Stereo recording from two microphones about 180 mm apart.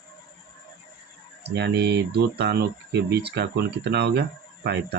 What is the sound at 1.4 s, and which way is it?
Speech, 65° right (ahead or behind).